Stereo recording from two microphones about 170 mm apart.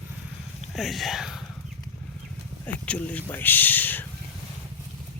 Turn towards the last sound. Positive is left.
turn(degrees=10)  # may be behind; listen again after turning